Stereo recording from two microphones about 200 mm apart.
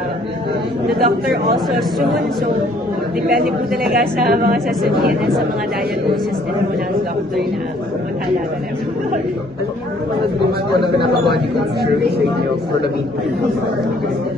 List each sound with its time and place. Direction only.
0.9 s a woman's voice: 50° right (ahead or behind)
1.7 s speech: centre (ahead or behind)
3.9 s a woman's voice: 50° right (ahead or behind)
10.8 s a man's voice: 20° left (ahead or behind)